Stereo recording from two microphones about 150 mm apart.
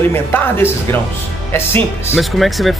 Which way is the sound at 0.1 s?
15° left (ahead or behind).